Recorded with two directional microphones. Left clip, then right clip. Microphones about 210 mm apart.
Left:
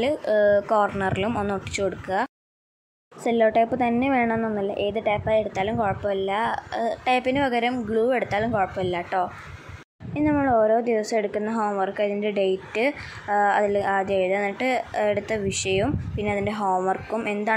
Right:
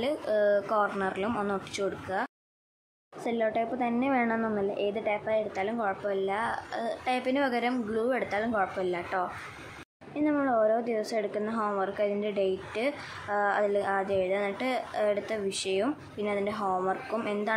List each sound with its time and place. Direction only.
0.0 s a woman's voice: 20° left (ahead or behind)